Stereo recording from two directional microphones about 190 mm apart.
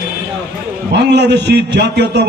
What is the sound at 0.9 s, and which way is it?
A man's voice, 60° right (ahead or behind).